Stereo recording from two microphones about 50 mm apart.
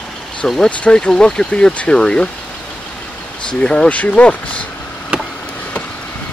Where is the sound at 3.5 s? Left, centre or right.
Centre.